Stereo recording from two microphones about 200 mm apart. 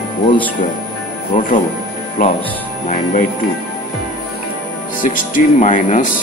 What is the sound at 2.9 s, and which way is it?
Speech, 40° left (ahead or behind).